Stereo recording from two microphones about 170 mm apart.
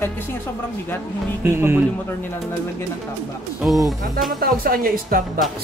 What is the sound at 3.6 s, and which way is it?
Speech, 10° right (ahead or behind).